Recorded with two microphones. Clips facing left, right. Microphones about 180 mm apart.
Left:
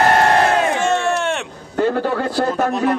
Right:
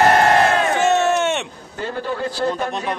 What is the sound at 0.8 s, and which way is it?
Crowd, centre (ahead or behind).